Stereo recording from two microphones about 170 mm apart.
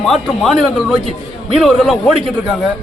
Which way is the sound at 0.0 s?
Centre (ahead or behind).